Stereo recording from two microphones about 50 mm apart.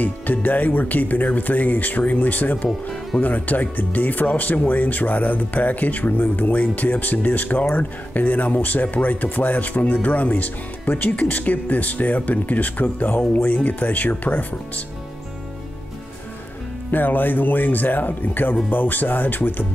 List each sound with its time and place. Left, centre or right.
0.0 s speech: left
16.9 s speech: left